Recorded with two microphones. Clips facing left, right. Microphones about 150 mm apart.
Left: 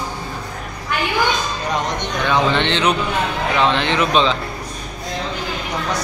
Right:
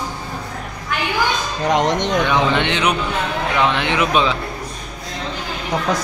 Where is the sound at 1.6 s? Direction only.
90° right.